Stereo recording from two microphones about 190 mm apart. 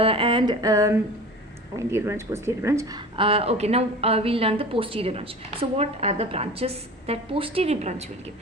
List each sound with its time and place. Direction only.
0.0 s a sound: 30° right (ahead or behind)
1.7 s speech: 15° right (ahead or behind)
3.2 s a woman's voice: 30° right (ahead or behind)